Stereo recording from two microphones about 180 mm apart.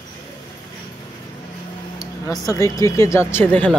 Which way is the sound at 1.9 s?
20° left (ahead or behind).